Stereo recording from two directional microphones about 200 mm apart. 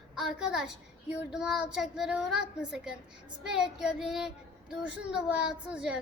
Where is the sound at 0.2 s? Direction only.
5° right (ahead or behind).